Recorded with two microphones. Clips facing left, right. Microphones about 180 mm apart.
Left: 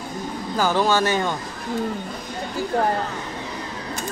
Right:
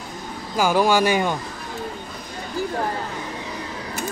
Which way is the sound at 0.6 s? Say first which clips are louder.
Right 2 dB; 10° right (ahead or behind).